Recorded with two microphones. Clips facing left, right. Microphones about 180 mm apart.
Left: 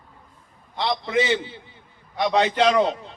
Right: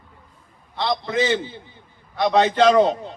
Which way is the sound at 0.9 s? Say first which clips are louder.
Right 1 dB; 15° left (ahead or behind).